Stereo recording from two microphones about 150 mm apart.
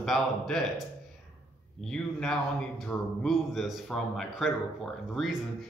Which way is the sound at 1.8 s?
5° left (ahead or behind).